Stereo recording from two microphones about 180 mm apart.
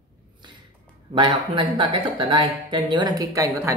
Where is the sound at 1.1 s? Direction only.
25° right (ahead or behind).